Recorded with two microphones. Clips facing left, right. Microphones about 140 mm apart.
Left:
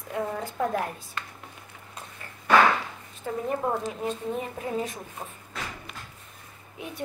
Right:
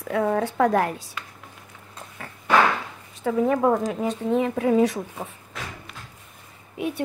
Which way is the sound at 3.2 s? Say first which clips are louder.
Right 8 dB; 90° right.